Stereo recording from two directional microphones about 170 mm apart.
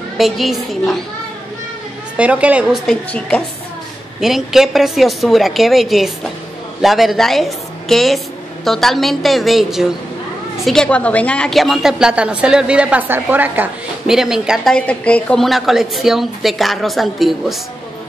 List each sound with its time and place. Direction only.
0.2 s a woman's voice: centre (ahead or behind)
2.1 s a woman's voice: 10° right (ahead or behind)
3.1 s a woman's voice: 5° left (ahead or behind)